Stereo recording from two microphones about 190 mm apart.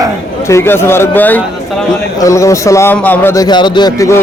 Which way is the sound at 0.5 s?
10° left (ahead or behind).